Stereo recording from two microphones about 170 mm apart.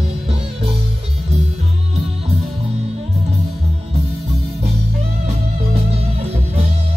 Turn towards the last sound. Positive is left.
turn(degrees=-40)  # may be behind; listen again after turning